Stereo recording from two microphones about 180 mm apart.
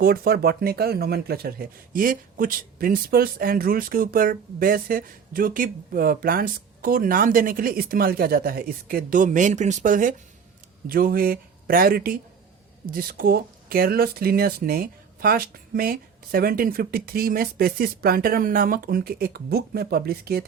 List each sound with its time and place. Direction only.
0.0 s speech: 55° right (ahead or behind)